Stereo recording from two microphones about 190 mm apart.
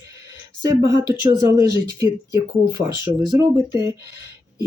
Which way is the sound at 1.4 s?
15° right (ahead or behind).